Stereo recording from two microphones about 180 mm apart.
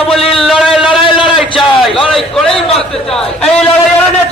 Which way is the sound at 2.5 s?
30° left (ahead or behind).